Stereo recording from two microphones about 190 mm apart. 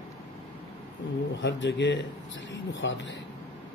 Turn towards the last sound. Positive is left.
turn(degrees=80)